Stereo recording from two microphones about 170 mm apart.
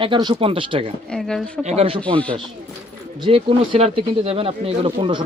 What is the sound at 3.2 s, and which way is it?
Speech, 30° right (ahead or behind).